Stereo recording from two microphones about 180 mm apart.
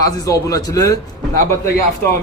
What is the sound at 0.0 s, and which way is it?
Speech, 20° left (ahead or behind).